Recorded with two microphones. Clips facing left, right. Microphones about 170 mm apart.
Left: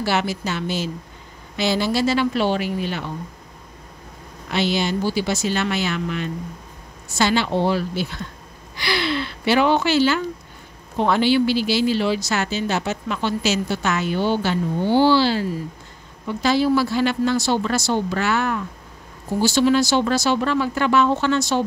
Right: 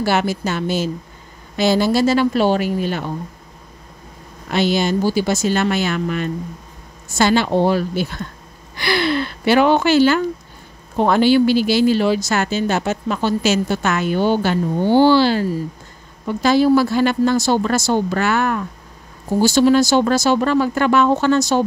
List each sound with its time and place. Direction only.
0.0 s speech: 45° right (ahead or behind)
4.5 s speech: 45° right (ahead or behind)